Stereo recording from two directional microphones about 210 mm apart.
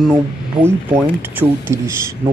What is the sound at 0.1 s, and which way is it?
Speech, 10° right (ahead or behind).